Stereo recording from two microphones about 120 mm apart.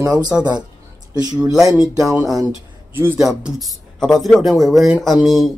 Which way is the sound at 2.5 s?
15° right (ahead or behind).